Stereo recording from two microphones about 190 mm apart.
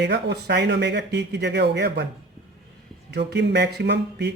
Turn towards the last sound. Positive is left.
turn(degrees=-65)  # may be behind; listen again after turning